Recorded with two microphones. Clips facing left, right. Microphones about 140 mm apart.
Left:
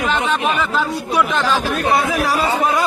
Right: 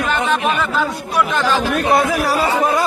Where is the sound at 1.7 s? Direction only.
50° right (ahead or behind).